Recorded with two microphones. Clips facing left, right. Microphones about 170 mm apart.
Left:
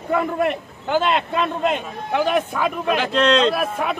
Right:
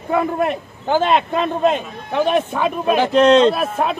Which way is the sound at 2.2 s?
25° right (ahead or behind).